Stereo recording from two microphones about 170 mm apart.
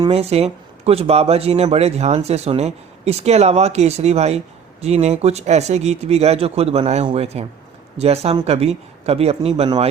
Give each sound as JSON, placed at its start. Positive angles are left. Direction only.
{"t": 0.1, "sound": "speech", "side_deg": -40}